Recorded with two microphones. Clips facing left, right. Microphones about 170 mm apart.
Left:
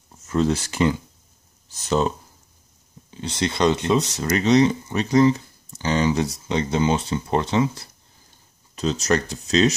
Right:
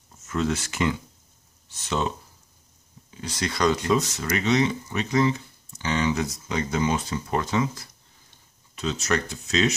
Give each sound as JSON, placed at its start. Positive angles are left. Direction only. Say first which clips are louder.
{"t": 0.3, "sound": "speech", "louder": "left 5 dB", "side_deg": 35}
{"t": 3.1, "sound": "speech", "louder": "left 5 dB", "side_deg": 25}